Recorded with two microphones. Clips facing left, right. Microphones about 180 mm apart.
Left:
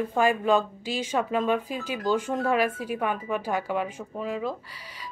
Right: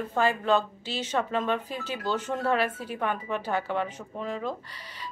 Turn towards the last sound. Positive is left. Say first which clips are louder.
# left 2 dB
turn(degrees=5)  # may be behind; listen again after turning